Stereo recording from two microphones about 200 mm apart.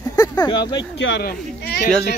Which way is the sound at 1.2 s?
50° left (ahead or behind).